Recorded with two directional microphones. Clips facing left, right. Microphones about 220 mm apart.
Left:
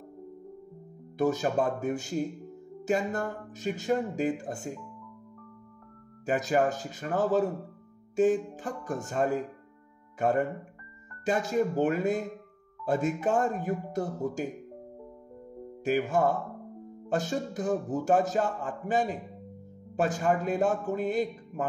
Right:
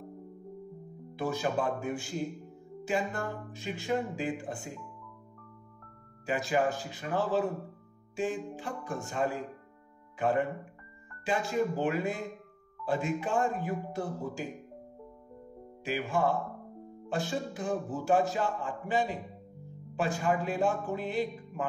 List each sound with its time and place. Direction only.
1.1 s speech: 45° left (ahead or behind)
6.2 s speech: 45° left (ahead or behind)
15.8 s speech: 45° left (ahead or behind)